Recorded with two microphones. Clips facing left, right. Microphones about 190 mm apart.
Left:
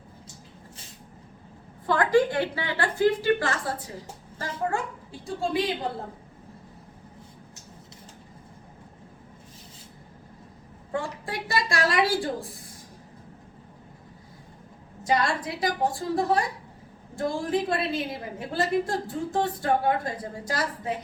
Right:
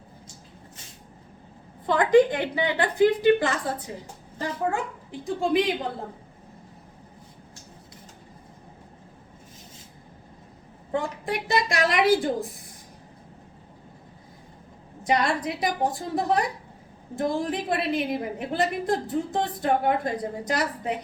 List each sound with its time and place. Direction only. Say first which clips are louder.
1.9 s a woman's voice: right 3 dB; 20° right (ahead or behind)
5.2 s a woman's voice: right 4 dB; 15° right (ahead or behind)
10.9 s a woman's voice: right 3 dB; 20° right (ahead or behind)
15.0 s a woman's voice: right 1 dB; 20° right (ahead or behind)